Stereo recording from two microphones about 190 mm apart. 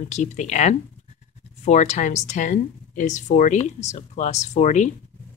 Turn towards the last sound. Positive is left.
turn(degrees=35)  # may be behind; listen again after turning